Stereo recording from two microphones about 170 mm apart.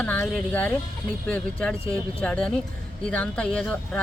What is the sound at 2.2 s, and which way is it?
Speech, 5° left (ahead or behind).